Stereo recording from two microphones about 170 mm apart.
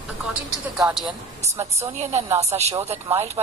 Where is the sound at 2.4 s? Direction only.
40° right (ahead or behind).